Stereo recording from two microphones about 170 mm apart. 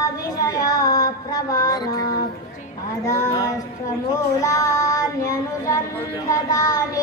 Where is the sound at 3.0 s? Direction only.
15° left (ahead or behind).